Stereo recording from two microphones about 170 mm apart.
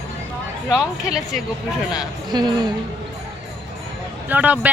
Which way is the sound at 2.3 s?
25° right (ahead or behind).